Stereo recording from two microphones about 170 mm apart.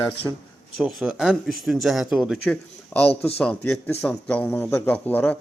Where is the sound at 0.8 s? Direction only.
Centre (ahead or behind).